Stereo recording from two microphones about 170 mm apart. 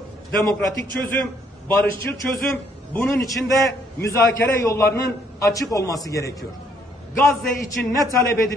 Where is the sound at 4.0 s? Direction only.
15° left (ahead or behind).